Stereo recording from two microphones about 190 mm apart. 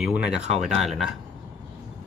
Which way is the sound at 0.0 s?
5° right (ahead or behind).